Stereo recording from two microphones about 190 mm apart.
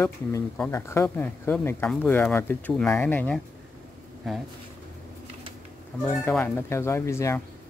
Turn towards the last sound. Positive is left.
turn(degrees=15)  # may be behind; listen again after turning